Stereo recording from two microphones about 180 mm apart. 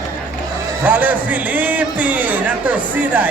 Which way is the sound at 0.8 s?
10° right (ahead or behind).